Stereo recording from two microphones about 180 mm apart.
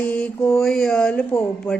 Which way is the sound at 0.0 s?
10° left (ahead or behind).